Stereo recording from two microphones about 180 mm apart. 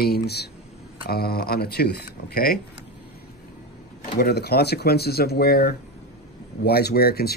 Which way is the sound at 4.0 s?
60° left (ahead or behind).